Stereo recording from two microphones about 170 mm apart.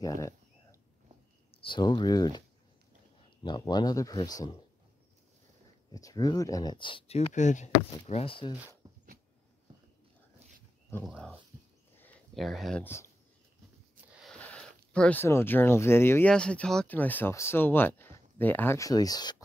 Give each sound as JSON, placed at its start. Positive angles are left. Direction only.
{"t": 0.0, "sound": "a sound", "side_deg": 20}
{"t": 1.5, "sound": "speech", "side_deg": 30}
{"t": 3.4, "sound": "speech", "side_deg": 25}
{"t": 5.9, "sound": "speech", "side_deg": 20}
{"t": 11.1, "sound": "speech", "side_deg": 0}
{"t": 12.0, "sound": "a sound", "side_deg": 5}
{"t": 12.8, "sound": "speech", "side_deg": 15}
{"t": 14.1, "sound": "a sound", "side_deg": 0}
{"t": 14.9, "sound": "speech", "side_deg": 5}